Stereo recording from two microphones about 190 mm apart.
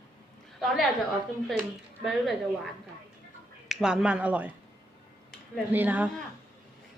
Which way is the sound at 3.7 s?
5° right (ahead or behind).